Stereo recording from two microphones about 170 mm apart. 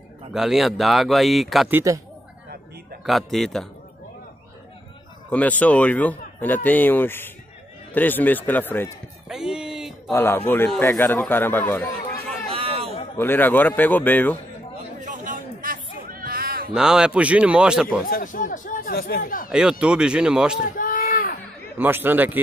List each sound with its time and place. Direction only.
0.3 s speech: centre (ahead or behind)
1.7 s speech: 15° right (ahead or behind)
3.1 s speech: centre (ahead or behind)
5.3 s speech: 10° left (ahead or behind)
9.3 s a sound: 5° right (ahead or behind)
10.1 s speech: 15° left (ahead or behind)
12.4 s a sound: 35° right (ahead or behind)
13.2 s speech: 10° left (ahead or behind)
15.0 s a sound: 50° right (ahead or behind)
16.7 s speech: 5° right (ahead or behind)
18.0 s speech: 55° left (ahead or behind)
19.5 s speech: 5° right (ahead or behind)
20.7 s a sound: 50° left (ahead or behind)
21.7 s speech: 10° right (ahead or behind)